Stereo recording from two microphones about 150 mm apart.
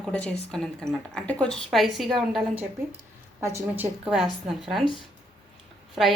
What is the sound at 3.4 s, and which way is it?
Speech, 15° right (ahead or behind).